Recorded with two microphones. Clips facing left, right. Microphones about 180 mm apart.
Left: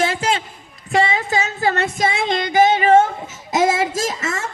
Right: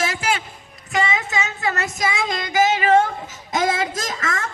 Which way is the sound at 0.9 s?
35° left (ahead or behind).